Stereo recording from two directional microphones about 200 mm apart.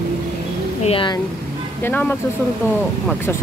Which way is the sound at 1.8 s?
10° left (ahead or behind).